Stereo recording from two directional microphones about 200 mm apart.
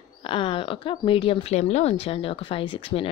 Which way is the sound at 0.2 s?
25° left (ahead or behind).